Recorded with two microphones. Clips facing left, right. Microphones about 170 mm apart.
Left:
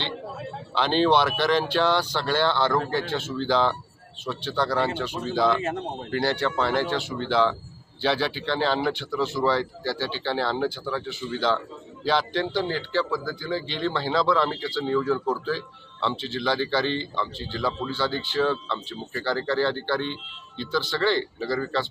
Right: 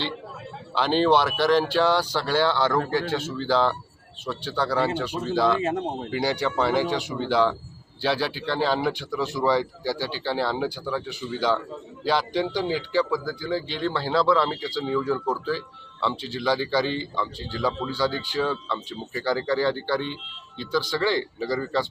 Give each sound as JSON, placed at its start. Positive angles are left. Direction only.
{"t": 0.8, "sound": "speech", "side_deg": -5}